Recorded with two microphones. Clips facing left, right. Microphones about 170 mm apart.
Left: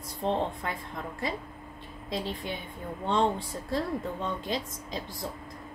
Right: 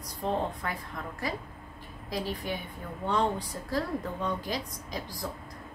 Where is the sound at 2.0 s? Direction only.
25° left (ahead or behind).